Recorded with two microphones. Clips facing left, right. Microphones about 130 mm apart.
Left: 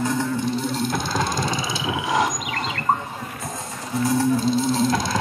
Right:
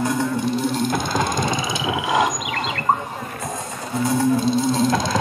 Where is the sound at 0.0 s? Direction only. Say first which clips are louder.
Right 2 dB; 15° right (ahead or behind).